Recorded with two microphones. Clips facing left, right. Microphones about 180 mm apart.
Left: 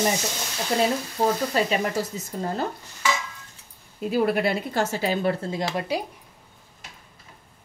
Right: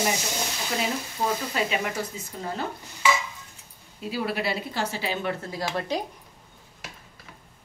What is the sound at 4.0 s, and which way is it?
Speech, 50° left (ahead or behind).